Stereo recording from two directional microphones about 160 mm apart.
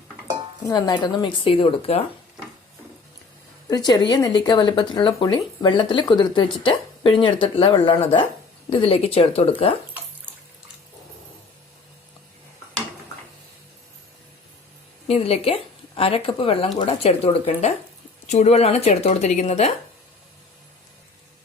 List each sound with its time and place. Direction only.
0.6 s speech: 25° left (ahead or behind)
3.7 s speech: 25° left (ahead or behind)
15.0 s a woman's voice: 40° left (ahead or behind)